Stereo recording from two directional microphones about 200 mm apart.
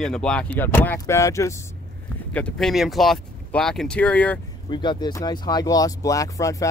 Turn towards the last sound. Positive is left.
turn(degrees=15)  # may be behind; listen again after turning